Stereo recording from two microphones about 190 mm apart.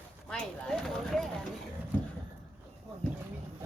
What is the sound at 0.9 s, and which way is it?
Clip-clop, centre (ahead or behind).